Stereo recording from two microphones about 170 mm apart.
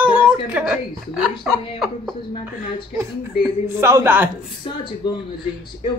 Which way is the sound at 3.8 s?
15° right (ahead or behind).